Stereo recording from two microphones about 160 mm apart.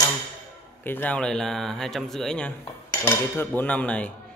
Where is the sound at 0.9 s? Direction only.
10° left (ahead or behind).